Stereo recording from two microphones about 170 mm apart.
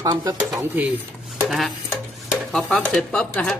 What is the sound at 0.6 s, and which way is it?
Speech, 10° right (ahead or behind).